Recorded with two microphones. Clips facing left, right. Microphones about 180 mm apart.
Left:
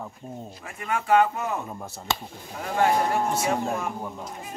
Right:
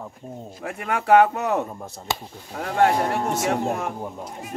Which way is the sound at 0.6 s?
65° right (ahead or behind).